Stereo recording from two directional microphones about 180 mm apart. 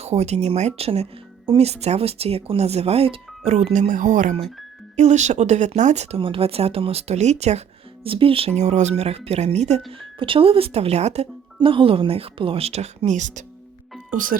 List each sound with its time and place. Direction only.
0.0 s speech: 35° right (ahead or behind)